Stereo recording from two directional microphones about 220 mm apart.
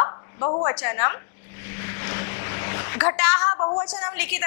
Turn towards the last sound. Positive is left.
turn(degrees=10)  # may be behind; listen again after turning